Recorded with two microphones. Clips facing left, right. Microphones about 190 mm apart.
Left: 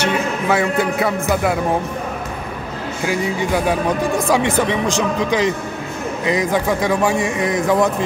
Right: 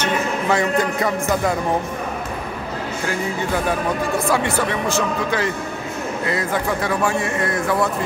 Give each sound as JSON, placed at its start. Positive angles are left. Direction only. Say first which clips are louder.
{"t": 0.0, "sound": "a man's voice", "louder": "left 2 dB", "side_deg": 5}
{"t": 3.1, "sound": "a man's voice", "louder": "left 4 dB", "side_deg": 15}